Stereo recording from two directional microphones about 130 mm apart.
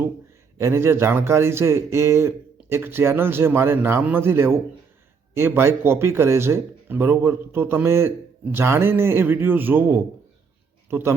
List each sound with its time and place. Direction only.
0.6 s a man's voice: 20° right (ahead or behind)